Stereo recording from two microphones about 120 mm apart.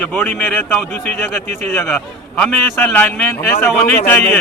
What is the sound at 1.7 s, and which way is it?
A man's voice, 20° left (ahead or behind).